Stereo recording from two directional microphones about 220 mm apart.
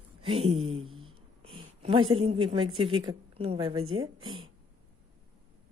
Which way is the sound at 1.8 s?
25° right (ahead or behind).